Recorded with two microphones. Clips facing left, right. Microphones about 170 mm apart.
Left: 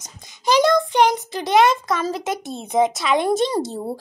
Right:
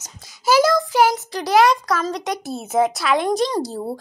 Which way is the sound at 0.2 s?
5° right (ahead or behind).